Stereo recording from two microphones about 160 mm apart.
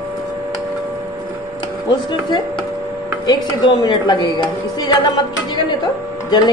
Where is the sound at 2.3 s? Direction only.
30° left (ahead or behind).